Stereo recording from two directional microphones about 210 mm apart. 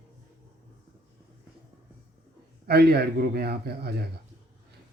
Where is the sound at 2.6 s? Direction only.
50° right (ahead or behind).